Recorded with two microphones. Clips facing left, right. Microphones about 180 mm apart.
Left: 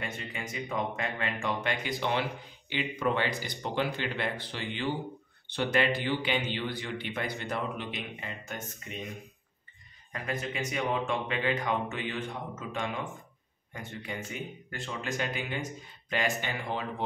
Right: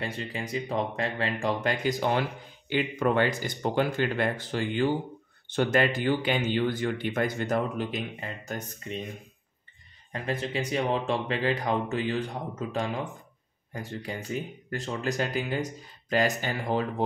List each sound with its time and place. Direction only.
0.0 s speech: 30° right (ahead or behind)
10.1 s speech: 30° right (ahead or behind)